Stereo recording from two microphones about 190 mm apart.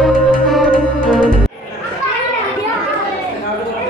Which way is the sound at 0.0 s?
Centre (ahead or behind).